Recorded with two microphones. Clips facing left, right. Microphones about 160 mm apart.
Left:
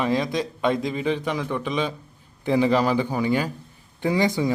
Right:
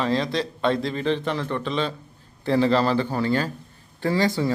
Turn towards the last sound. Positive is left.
turn(degrees=15)  # may be behind; listen again after turning